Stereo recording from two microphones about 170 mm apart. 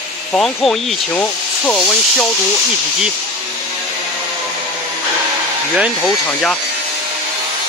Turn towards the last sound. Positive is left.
turn(degrees=5)  # may be behind; listen again after turning